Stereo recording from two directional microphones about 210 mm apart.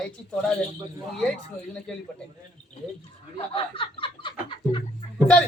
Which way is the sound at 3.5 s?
25° left (ahead or behind).